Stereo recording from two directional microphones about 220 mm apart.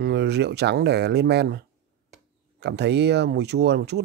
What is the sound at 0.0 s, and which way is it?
Speech, 50° right (ahead or behind).